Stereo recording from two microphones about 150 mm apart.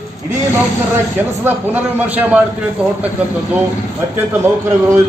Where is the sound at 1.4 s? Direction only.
15° right (ahead or behind).